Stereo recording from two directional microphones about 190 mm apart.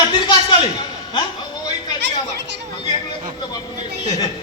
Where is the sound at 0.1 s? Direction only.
25° left (ahead or behind).